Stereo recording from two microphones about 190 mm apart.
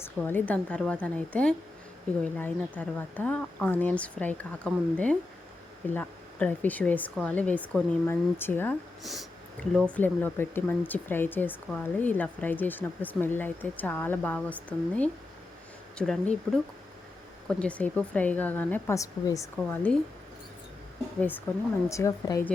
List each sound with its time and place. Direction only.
0.0 s speech: 10° left (ahead or behind)
9.9 s speech: 10° left (ahead or behind)
17.6 s speech: 5° left (ahead or behind)
21.2 s speech: 10° left (ahead or behind)